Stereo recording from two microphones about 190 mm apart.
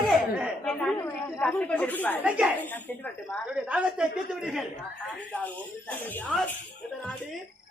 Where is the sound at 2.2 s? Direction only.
5° right (ahead or behind).